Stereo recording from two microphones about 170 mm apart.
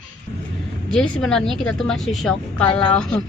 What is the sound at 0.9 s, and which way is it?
A woman's voice, 5° left (ahead or behind).